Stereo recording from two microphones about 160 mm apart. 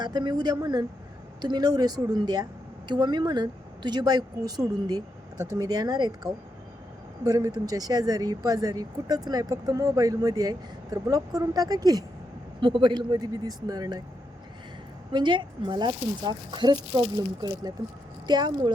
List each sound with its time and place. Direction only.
0.0 s a woman's voice: 25° right (ahead or behind)
15.1 s a woman's voice: 30° right (ahead or behind)